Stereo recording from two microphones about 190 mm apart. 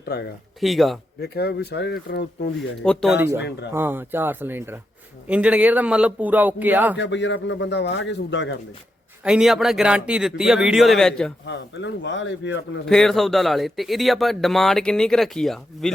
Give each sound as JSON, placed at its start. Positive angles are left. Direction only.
{"t": 0.0, "sound": "speech", "side_deg": 55}
{"t": 0.6, "sound": "speech", "side_deg": 0}
{"t": 1.2, "sound": "speech", "side_deg": 60}
{"t": 2.6, "sound": "speech", "side_deg": 5}
{"t": 3.2, "sound": "a man's voice", "side_deg": -10}
{"t": 6.9, "sound": "a man's voice", "side_deg": 70}
{"t": 9.2, "sound": "speech", "side_deg": -5}
{"t": 11.4, "sound": "a man's voice", "side_deg": 65}
{"t": 12.8, "sound": "speech", "side_deg": 5}